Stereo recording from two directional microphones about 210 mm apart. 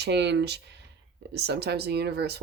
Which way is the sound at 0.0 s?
55° right (ahead or behind).